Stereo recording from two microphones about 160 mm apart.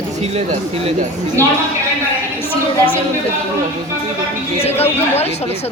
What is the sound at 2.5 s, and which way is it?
Speech, 35° left (ahead or behind).